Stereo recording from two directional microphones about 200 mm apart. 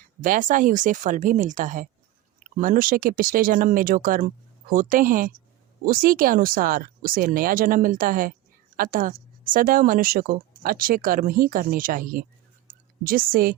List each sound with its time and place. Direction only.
0.2 s a woman's voice: 40° right (ahead or behind)